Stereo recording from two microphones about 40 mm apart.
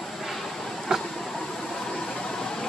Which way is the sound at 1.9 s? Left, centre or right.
Centre.